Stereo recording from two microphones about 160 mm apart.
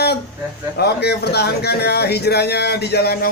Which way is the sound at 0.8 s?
90° left.